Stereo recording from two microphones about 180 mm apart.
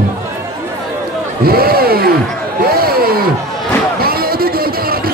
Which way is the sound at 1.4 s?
55° right (ahead or behind).